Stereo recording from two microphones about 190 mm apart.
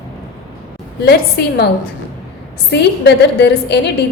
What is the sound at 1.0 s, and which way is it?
Speech, 55° left (ahead or behind).